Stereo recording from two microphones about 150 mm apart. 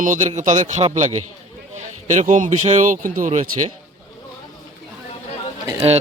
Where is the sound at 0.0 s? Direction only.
55° right (ahead or behind).